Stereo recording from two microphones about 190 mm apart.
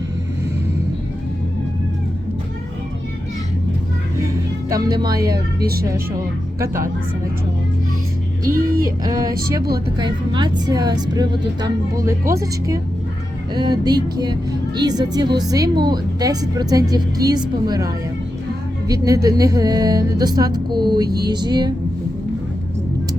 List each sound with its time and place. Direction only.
4.7 s speech: 20° right (ahead or behind)
5.6 s speech: 50° right (ahead or behind)
5.9 s speech: 15° right (ahead or behind)
8.8 s speech: 20° right (ahead or behind)